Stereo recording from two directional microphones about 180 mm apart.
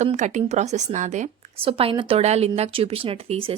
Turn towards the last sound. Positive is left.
turn(degrees=-30)  # may be behind; listen again after turning